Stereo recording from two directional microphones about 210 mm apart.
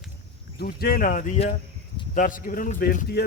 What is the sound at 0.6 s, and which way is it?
A man's voice, 45° left (ahead or behind).